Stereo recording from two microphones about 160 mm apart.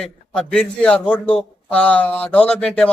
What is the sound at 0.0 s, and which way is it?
A man's voice, 5° left (ahead or behind).